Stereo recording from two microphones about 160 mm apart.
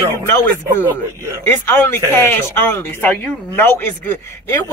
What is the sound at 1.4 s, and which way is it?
Speech, 15° left (ahead or behind).